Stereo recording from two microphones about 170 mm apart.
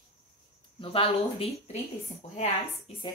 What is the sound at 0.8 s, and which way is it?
A woman's voice, 30° left (ahead or behind).